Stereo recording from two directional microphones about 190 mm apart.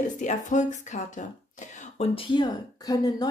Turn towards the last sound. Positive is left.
turn(degrees=20)  # may be behind; listen again after turning